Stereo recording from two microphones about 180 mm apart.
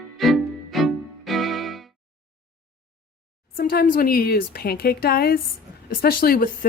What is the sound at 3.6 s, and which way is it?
Speech, 50° left (ahead or behind).